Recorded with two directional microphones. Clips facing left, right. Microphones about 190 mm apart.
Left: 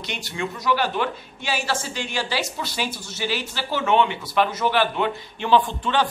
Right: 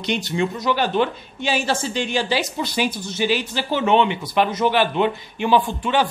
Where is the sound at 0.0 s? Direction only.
20° right (ahead or behind).